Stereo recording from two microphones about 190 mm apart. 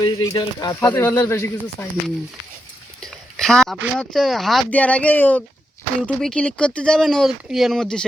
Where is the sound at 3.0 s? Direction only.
Centre (ahead or behind).